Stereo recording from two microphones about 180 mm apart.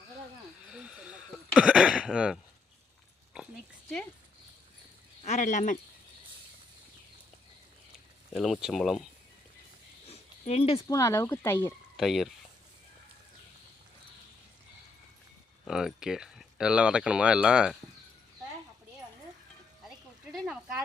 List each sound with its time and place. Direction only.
0.7 s a sound: 5° right (ahead or behind)
5.2 s speech: 45° left (ahead or behind)
7.9 s speech: centre (ahead or behind)
10.1 s a sound: 35° left (ahead or behind)
10.8 s speech: 20° left (ahead or behind)
11.9 s speech: centre (ahead or behind)
15.6 s speech: centre (ahead or behind)
20.3 s speech: centre (ahead or behind)